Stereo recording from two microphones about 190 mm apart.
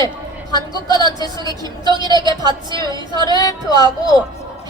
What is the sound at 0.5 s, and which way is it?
Speech, 20° left (ahead or behind).